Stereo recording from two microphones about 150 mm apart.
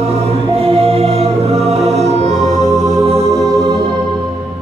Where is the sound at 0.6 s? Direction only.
40° right (ahead or behind).